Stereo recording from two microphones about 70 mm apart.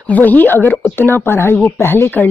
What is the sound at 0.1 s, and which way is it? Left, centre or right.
Speech, left.